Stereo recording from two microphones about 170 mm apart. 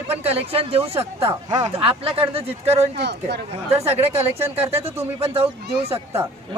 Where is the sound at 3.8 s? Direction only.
35° right (ahead or behind).